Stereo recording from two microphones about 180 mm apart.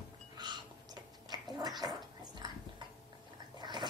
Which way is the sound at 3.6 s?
25° right (ahead or behind).